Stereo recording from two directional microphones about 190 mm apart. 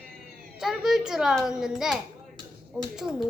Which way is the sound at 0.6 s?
Centre (ahead or behind).